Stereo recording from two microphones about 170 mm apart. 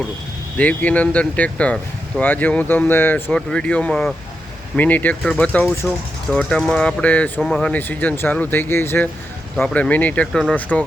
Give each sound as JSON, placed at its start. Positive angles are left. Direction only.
{"t": 0.5, "sound": "speech", "side_deg": 10}
{"t": 7.7, "sound": "speech", "side_deg": 10}